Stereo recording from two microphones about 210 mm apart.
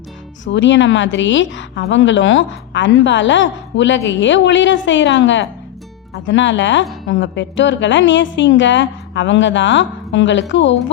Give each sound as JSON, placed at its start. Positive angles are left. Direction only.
{"t": 0.5, "sound": "a woman's voice", "side_deg": 60}